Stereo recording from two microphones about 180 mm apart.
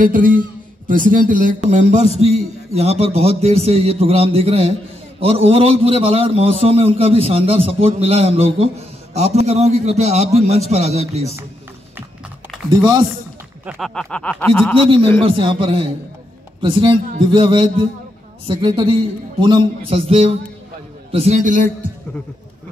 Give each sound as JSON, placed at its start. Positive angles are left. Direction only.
{"t": 0.0, "sound": "a man's voice", "side_deg": -50}
{"t": 12.6, "sound": "music", "side_deg": -25}
{"t": 13.7, "sound": "a sound", "side_deg": 0}
{"t": 14.8, "sound": "a man's voice", "side_deg": -30}
{"t": 16.6, "sound": "music", "side_deg": -30}
{"t": 18.5, "sound": "a man's voice", "side_deg": -30}